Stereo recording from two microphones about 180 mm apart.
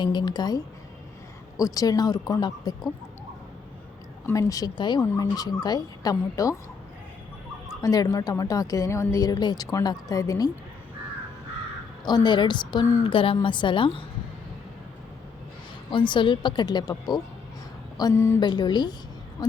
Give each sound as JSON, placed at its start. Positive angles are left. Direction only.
{"t": 0.0, "sound": "a woman's voice", "side_deg": 25}
{"t": 4.3, "sound": "a woman's voice", "side_deg": 20}
{"t": 7.8, "sound": "a woman's voice", "side_deg": 20}
{"t": 12.0, "sound": "a woman's voice", "side_deg": 25}
{"t": 15.9, "sound": "a woman's voice", "side_deg": 25}
{"t": 18.3, "sound": "a woman's voice", "side_deg": 25}